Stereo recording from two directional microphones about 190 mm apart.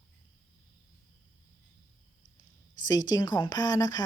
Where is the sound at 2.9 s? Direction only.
20° left (ahead or behind).